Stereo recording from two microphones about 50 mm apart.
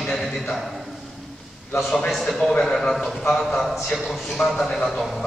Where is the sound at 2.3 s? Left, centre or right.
Centre.